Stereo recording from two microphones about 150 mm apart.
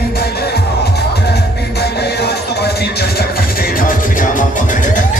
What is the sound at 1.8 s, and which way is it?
Music, 90° left.